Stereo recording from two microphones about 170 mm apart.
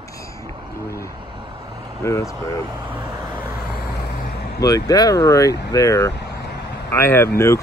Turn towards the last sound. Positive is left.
turn(degrees=15)  # may be behind; listen again after turning